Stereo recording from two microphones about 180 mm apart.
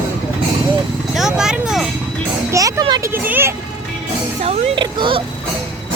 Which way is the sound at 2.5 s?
20° right (ahead or behind).